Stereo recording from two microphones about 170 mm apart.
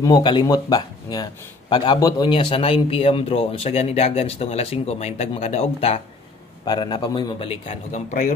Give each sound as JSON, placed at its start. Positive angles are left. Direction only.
{"t": 0.0, "sound": "a man's voice", "side_deg": 25}
{"t": 6.6, "sound": "a man's voice", "side_deg": 25}